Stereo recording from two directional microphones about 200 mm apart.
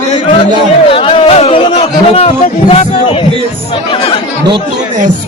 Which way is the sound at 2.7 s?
25° left (ahead or behind).